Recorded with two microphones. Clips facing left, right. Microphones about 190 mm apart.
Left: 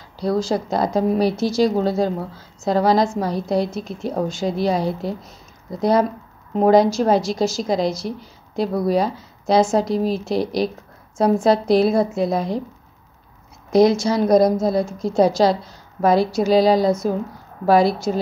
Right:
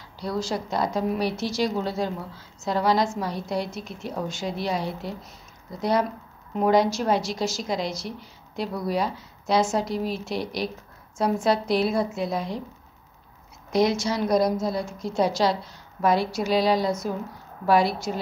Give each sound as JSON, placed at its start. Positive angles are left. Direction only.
{"t": 0.5, "sound": "a woman's voice", "side_deg": 40}
{"t": 13.7, "sound": "a woman's voice", "side_deg": 35}